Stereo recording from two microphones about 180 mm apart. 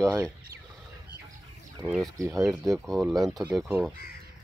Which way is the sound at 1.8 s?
5° right (ahead or behind).